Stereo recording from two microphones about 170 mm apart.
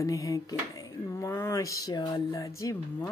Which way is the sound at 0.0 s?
20° left (ahead or behind).